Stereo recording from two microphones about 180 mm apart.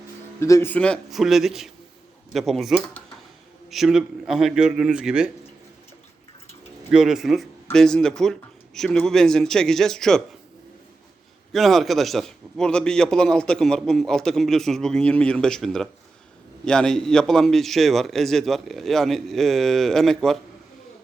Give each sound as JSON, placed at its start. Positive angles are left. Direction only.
{"t": 0.3, "sound": "a man's voice", "side_deg": 15}
{"t": 6.9, "sound": "a man's voice", "side_deg": -5}
{"t": 11.5, "sound": "a man's voice", "side_deg": 0}